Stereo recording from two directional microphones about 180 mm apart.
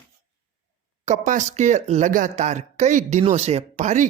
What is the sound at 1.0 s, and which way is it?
Speech, 45° right (ahead or behind).